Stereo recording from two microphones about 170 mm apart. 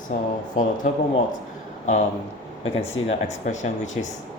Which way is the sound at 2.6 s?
40° left (ahead or behind).